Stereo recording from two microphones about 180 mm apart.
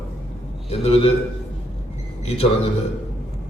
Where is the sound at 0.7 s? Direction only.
35° left (ahead or behind).